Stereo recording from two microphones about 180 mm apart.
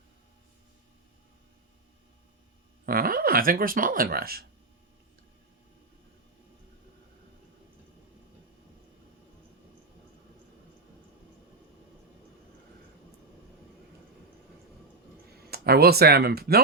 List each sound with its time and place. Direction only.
2.8 s speech: 55° right (ahead or behind)
15.4 s speech: 60° right (ahead or behind)